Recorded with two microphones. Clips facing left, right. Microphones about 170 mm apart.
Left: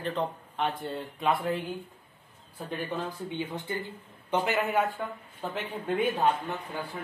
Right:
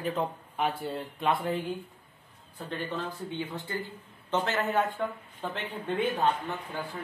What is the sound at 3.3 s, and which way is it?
Speech, 20° left (ahead or behind).